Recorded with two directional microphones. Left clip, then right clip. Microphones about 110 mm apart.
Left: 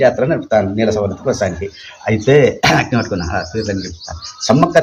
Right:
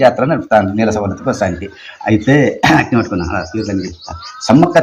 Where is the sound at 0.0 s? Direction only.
10° left (ahead or behind).